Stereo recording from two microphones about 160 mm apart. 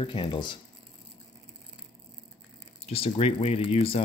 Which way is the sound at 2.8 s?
40° left (ahead or behind).